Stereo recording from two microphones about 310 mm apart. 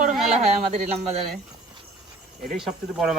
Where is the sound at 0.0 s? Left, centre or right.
Right.